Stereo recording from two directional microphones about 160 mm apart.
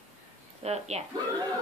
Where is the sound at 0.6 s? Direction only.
40° right (ahead or behind).